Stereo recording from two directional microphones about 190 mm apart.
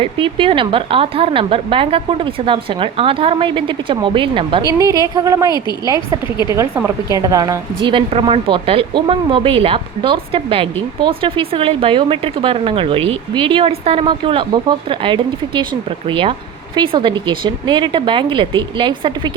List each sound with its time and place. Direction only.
0.0 s a woman's voice: 25° right (ahead or behind)